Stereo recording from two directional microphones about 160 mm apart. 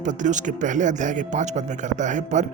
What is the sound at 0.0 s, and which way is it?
Speech, 50° right (ahead or behind).